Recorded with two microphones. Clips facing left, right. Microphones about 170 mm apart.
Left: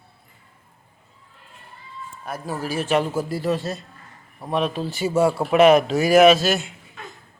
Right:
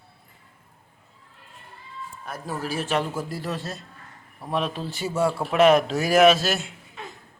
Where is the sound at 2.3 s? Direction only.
5° left (ahead or behind).